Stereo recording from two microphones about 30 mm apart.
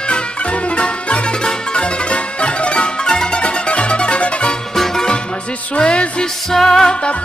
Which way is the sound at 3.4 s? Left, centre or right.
Left.